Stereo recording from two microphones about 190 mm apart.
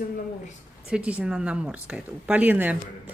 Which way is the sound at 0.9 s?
5° right (ahead or behind).